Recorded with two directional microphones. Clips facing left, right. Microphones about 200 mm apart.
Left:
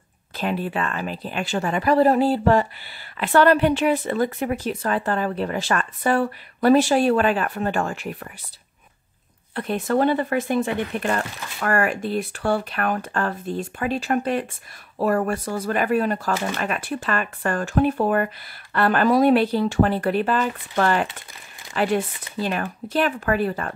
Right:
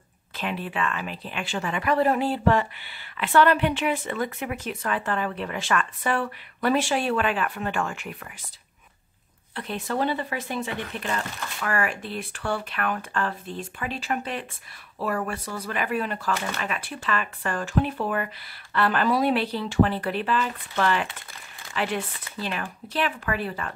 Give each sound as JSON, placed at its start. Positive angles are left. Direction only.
{"t": 0.4, "sound": "speech", "side_deg": 40}
{"t": 9.6, "sound": "speech", "side_deg": 50}